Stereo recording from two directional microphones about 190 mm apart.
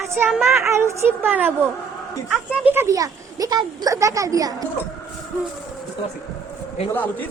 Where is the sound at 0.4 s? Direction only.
15° right (ahead or behind).